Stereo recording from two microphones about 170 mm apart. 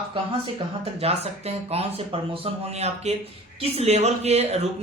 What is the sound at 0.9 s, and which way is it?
A woman's voice, 35° right (ahead or behind).